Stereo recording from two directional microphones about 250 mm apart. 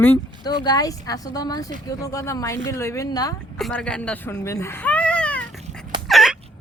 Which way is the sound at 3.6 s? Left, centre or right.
Centre.